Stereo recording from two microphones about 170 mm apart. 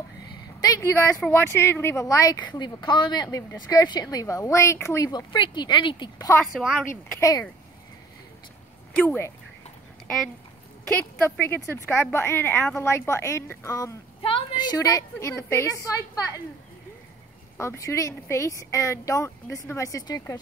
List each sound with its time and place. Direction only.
0.6 s a woman's voice: 20° left (ahead or behind)
8.9 s speech: 10° left (ahead or behind)
11.2 s speech: 10° left (ahead or behind)
14.2 s a sound: 30° left (ahead or behind)
14.8 s speech: 20° left (ahead or behind)
17.6 s speech: 15° left (ahead or behind)